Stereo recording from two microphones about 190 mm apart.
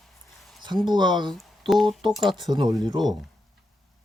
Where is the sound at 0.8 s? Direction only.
25° right (ahead or behind).